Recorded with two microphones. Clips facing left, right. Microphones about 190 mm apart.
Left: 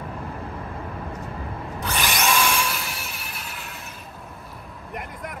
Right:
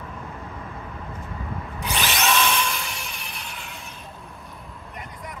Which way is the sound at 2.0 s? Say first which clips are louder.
Even; 10° left (ahead or behind).